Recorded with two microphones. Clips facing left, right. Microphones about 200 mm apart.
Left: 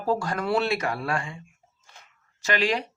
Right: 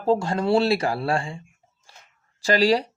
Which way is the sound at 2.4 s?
35° right (ahead or behind).